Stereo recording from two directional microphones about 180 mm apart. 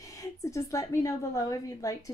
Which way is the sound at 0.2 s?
15° left (ahead or behind).